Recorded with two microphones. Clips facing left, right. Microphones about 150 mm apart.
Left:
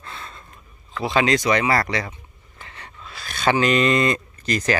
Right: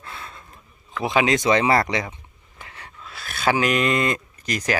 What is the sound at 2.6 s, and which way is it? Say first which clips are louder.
Speech: even; 5° right (ahead or behind).